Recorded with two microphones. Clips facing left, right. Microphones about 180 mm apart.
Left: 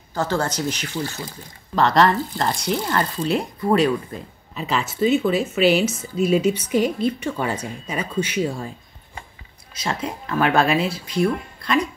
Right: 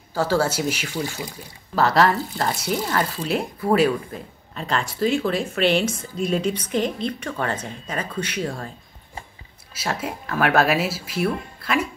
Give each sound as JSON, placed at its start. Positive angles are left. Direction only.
{"t": 0.1, "sound": "speech", "side_deg": -10}
{"t": 9.8, "sound": "speech", "side_deg": -5}